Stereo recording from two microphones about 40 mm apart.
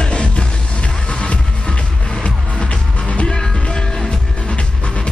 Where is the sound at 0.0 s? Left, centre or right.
Left.